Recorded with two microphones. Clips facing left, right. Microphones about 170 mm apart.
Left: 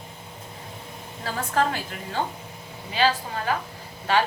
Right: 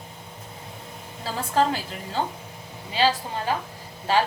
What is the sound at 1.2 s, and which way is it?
Speech, 30° right (ahead or behind).